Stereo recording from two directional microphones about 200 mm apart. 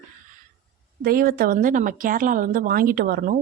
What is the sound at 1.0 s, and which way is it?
Speech, 45° right (ahead or behind).